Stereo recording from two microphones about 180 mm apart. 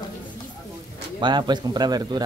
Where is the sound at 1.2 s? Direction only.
25° right (ahead or behind).